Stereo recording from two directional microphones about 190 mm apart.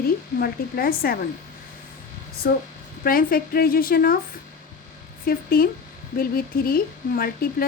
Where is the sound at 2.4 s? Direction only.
55° left (ahead or behind).